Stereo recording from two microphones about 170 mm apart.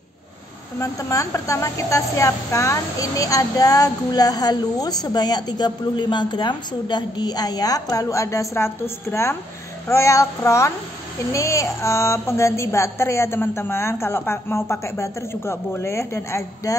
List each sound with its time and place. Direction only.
0.7 s a woman's voice: 20° left (ahead or behind)